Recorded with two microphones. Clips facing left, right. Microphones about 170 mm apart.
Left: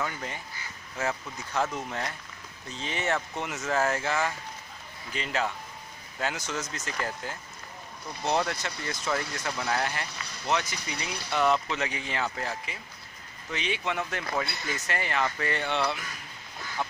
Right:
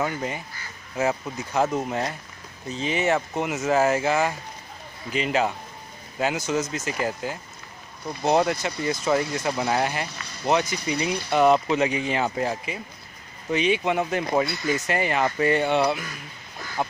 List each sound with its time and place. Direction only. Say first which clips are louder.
0.0 s speech: right 7 dB; 15° right (ahead or behind)
2.8 s speech: right 7 dB; 10° right (ahead or behind)